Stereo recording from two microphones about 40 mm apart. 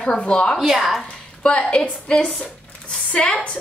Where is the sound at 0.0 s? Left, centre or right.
Left.